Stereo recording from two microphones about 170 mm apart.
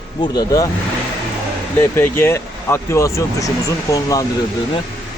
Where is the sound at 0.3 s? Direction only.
20° left (ahead or behind).